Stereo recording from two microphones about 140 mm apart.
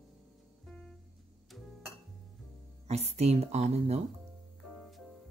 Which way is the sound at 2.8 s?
50° right (ahead or behind).